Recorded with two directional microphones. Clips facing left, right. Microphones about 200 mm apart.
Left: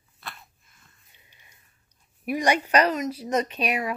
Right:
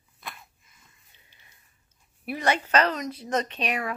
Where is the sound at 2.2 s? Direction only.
15° left (ahead or behind).